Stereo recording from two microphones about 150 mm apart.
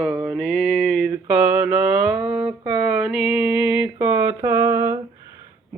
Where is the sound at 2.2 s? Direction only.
35° right (ahead or behind).